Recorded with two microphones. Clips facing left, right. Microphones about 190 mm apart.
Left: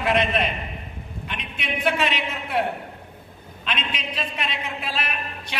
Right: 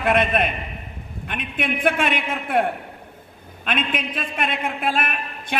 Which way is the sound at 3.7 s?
50° right (ahead or behind).